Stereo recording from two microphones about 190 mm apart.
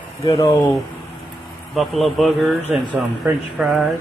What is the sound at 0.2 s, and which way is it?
Speech, 20° left (ahead or behind).